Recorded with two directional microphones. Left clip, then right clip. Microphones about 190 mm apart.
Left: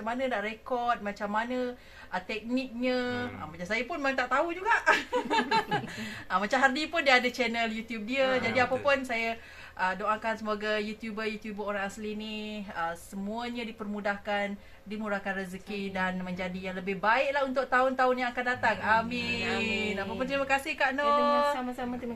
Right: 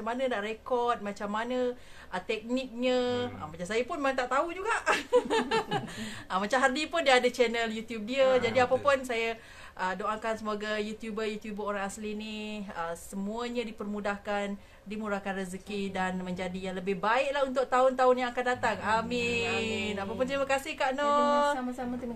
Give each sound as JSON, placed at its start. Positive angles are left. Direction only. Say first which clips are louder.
{"t": 0.0, "sound": "speech", "louder": "even", "side_deg": -40}